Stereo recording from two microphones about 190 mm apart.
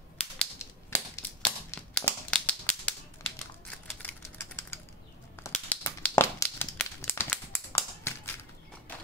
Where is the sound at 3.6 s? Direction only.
10° left (ahead or behind).